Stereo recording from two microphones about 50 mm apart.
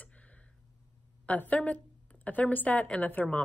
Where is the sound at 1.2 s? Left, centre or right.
Left.